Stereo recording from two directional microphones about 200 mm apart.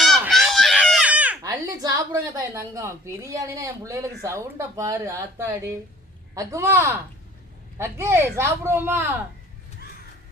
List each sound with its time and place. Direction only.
0.0 s fowl: centre (ahead or behind)
1.4 s a woman's voice: 15° right (ahead or behind)